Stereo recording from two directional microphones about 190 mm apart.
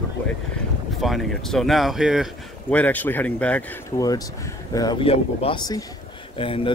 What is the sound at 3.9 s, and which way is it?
Speech, 20° left (ahead or behind).